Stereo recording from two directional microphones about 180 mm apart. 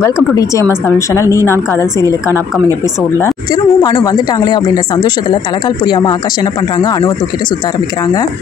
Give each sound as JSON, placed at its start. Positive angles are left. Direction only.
{"t": 0.0, "sound": "a woman's voice", "side_deg": 15}